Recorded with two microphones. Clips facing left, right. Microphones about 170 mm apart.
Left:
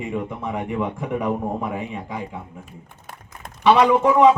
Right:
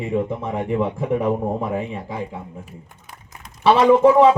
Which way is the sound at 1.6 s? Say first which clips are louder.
Right 3 dB; 30° right (ahead or behind).